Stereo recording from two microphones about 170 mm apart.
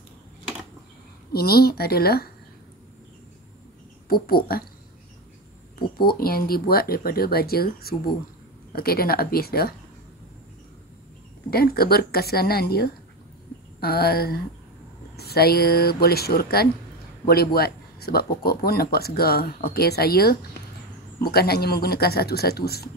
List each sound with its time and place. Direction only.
1.3 s speech: 65° left (ahead or behind)
4.1 s speech: 60° left (ahead or behind)
5.8 s speech: 60° left (ahead or behind)
11.5 s speech: 65° left (ahead or behind)